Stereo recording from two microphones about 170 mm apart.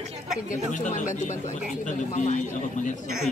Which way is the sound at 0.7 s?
45° left (ahead or behind).